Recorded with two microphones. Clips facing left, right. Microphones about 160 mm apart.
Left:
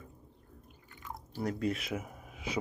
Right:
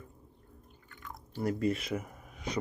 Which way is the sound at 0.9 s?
20° left (ahead or behind).